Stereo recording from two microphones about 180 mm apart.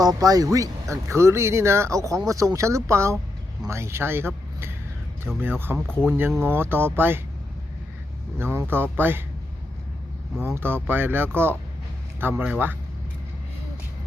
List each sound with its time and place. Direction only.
0.0 s speech: 20° right (ahead or behind)
5.4 s speech: 10° right (ahead or behind)
8.4 s speech: 10° right (ahead or behind)
10.4 s speech: 15° right (ahead or behind)